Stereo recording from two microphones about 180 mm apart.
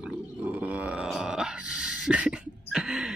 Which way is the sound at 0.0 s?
5° right (ahead or behind).